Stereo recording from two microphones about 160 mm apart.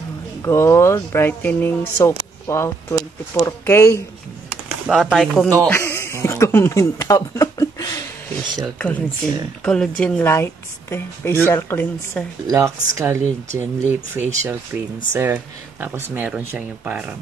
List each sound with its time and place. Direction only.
0.4 s speech: 15° left (ahead or behind)
4.5 s speech: 5° right (ahead or behind)
5.7 s a sound: 15° left (ahead or behind)
8.7 s speech: 5° left (ahead or behind)
12.4 s speech: 20° right (ahead or behind)